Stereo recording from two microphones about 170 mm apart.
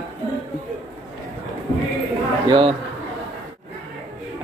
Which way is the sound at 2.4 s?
30° right (ahead or behind).